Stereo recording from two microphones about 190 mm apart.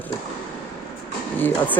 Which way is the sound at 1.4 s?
10° left (ahead or behind).